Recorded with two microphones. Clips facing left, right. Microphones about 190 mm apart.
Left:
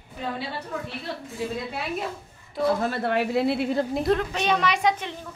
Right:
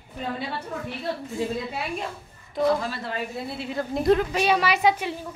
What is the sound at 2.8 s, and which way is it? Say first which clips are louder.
Speech: left 6 dB; 55° left (ahead or behind).